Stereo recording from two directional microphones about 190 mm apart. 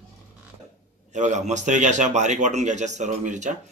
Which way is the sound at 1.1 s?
40° right (ahead or behind).